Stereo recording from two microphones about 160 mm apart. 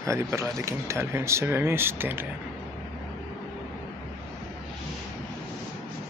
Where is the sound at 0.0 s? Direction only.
20° right (ahead or behind).